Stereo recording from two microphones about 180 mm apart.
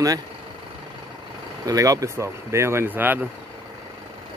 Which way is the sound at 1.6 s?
20° right (ahead or behind).